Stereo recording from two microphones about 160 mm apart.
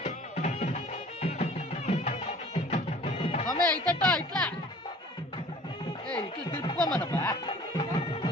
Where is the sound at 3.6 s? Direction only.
10° left (ahead or behind).